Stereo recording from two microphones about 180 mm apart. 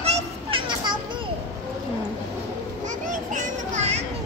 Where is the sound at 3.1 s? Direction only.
45° right (ahead or behind).